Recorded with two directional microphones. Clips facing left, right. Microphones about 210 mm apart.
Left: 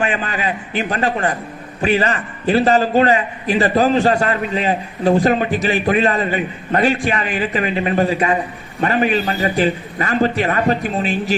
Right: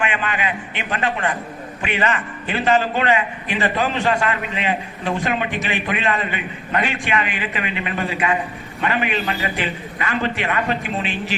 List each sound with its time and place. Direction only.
0.0 s a man's voice: 35° left (ahead or behind)